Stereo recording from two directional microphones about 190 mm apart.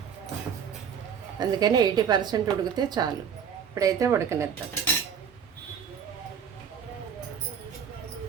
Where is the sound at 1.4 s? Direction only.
20° right (ahead or behind).